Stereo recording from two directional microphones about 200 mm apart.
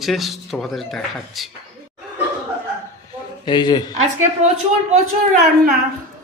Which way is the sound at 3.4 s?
20° left (ahead or behind).